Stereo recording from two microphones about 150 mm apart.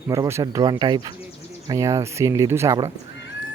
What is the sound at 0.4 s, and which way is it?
Speech, 30° right (ahead or behind).